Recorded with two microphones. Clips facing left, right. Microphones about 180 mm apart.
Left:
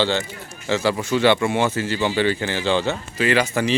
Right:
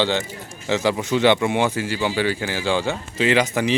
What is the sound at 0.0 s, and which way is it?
Speech, 15° right (ahead or behind).